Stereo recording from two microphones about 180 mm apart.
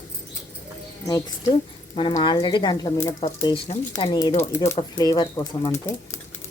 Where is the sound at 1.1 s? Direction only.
15° left (ahead or behind).